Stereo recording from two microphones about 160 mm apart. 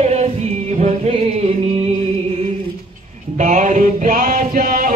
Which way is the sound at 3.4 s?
50° right (ahead or behind).